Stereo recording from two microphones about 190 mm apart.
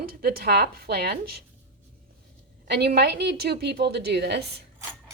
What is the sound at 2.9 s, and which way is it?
A woman's voice, 60° right (ahead or behind).